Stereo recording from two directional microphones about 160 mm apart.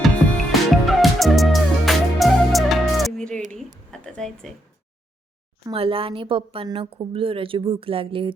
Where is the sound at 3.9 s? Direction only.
5° left (ahead or behind).